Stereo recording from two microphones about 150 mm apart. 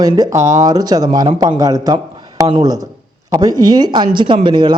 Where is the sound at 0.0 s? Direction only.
25° right (ahead or behind).